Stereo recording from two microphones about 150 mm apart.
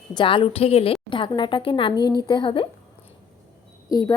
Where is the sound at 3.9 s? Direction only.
20° left (ahead or behind).